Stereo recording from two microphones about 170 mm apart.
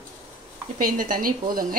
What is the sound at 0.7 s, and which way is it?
A woman's voice, 50° right (ahead or behind).